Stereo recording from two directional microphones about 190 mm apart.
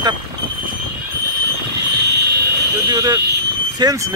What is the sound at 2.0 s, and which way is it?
Vehicle, 60° right (ahead or behind).